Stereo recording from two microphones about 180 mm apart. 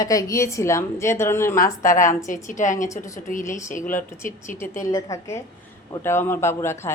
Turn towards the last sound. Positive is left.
turn(degrees=15)  # may be behind; listen again after turning